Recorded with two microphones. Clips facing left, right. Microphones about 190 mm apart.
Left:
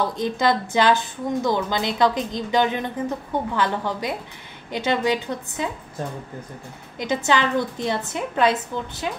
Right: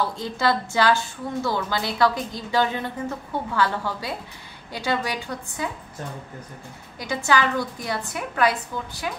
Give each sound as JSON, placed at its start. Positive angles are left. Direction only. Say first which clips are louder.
{"t": 0.0, "sound": "a woman's voice", "louder": "left 3 dB", "side_deg": 20}
{"t": 7.0, "sound": "a woman's voice", "louder": "left 2 dB", "side_deg": 20}